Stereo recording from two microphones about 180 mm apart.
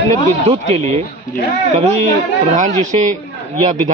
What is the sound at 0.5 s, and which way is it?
Speech, 40° right (ahead or behind).